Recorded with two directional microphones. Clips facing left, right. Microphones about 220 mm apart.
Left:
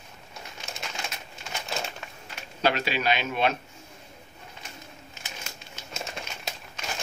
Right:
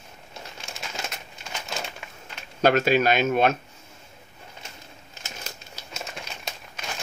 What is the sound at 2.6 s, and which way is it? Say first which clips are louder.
Speech: right 7 dB; 50° right (ahead or behind).